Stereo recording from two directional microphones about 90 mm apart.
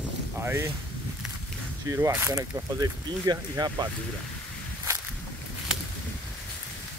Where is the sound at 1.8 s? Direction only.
35° right (ahead or behind).